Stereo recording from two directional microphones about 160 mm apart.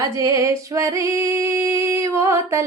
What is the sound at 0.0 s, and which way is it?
Music, 20° right (ahead or behind).